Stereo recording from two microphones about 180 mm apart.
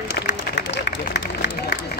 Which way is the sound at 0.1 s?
75° left (ahead or behind).